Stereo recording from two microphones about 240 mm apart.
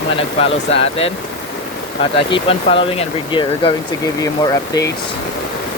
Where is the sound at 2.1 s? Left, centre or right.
Left.